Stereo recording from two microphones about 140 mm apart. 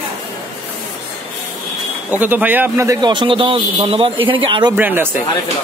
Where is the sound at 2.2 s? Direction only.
15° right (ahead or behind).